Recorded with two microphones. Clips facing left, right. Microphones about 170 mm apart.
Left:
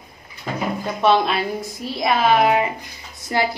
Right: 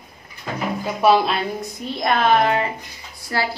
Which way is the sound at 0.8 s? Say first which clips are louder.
Right 1 dB; 5° right (ahead or behind).